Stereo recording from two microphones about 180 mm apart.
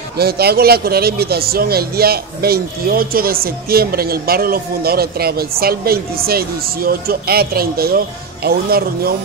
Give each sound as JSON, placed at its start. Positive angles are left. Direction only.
{"t": 0.2, "sound": "speech", "side_deg": -60}